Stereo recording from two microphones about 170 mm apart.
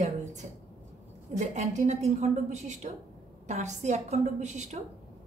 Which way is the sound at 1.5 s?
45° right (ahead or behind).